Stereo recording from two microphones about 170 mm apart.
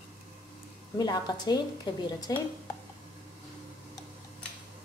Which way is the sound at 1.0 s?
25° left (ahead or behind).